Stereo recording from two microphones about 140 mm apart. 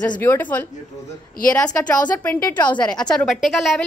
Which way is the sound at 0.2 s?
15° left (ahead or behind).